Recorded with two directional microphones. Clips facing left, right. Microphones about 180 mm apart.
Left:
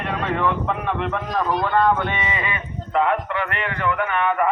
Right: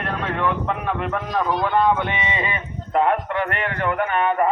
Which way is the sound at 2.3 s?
30° right (ahead or behind).